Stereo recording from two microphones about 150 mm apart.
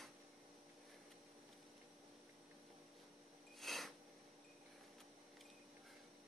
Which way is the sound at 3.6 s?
Centre (ahead or behind).